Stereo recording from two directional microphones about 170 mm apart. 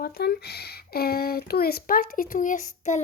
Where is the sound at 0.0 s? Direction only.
65° left (ahead or behind).